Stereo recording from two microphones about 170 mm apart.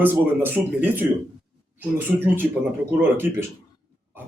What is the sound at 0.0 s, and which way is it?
Speech, 10° right (ahead or behind).